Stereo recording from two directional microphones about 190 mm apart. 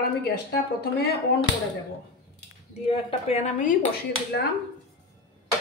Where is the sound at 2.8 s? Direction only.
30° left (ahead or behind).